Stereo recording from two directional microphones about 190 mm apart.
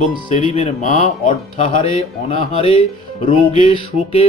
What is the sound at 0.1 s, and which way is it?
Speech, 30° left (ahead or behind).